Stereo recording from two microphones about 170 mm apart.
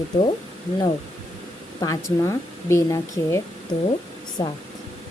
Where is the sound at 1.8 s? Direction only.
20° left (ahead or behind).